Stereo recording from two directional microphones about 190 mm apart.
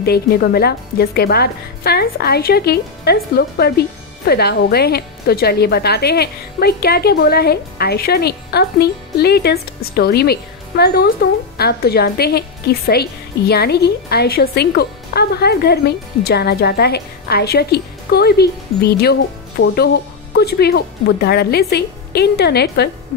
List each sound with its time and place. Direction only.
0.0 s a woman's voice: 55° left (ahead or behind)